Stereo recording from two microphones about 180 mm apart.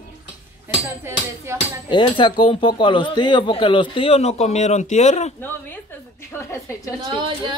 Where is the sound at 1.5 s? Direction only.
15° right (ahead or behind).